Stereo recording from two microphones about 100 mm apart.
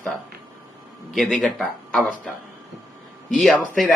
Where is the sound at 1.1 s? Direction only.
Centre (ahead or behind).